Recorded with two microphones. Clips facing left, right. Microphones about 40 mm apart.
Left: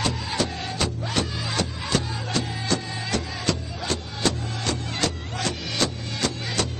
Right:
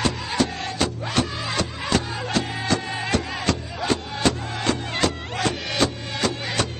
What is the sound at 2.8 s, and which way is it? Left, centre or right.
Music, right.